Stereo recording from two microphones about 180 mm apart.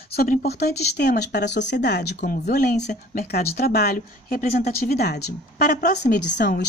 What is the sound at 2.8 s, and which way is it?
Speech, 40° left (ahead or behind).